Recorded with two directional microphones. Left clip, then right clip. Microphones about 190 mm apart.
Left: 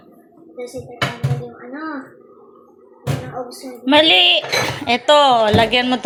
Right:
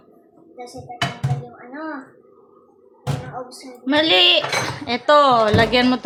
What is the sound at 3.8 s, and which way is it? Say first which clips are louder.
A woman's voice: left 3 dB; centre (ahead or behind).